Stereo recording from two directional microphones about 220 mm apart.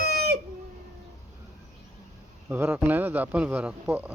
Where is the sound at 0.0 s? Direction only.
45° right (ahead or behind).